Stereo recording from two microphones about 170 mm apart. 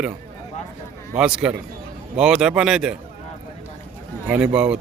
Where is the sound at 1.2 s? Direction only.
5° right (ahead or behind).